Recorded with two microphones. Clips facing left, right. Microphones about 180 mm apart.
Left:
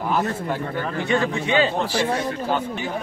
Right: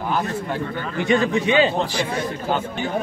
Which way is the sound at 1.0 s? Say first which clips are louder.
Right 5 dB; 15° right (ahead or behind).